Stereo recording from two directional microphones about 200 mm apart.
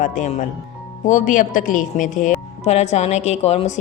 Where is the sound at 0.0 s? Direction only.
40° left (ahead or behind).